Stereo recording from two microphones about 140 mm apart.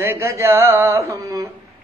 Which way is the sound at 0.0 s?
15° right (ahead or behind).